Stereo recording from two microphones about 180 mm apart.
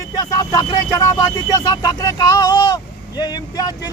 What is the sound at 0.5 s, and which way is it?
Speech, 20° left (ahead or behind).